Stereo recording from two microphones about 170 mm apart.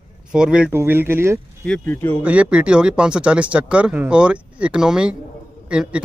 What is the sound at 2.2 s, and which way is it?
Speech, 10° right (ahead or behind).